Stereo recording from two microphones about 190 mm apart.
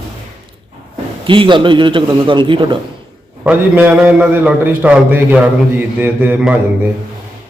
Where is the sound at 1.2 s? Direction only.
25° right (ahead or behind).